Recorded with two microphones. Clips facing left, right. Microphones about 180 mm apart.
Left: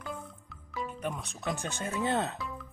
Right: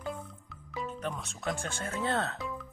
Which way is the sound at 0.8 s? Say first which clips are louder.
Even; 10° left (ahead or behind).